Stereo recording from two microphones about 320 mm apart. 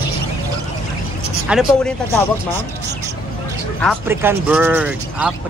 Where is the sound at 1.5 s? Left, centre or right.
Centre.